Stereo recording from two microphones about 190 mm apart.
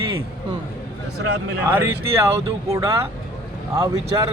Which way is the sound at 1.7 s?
15° right (ahead or behind).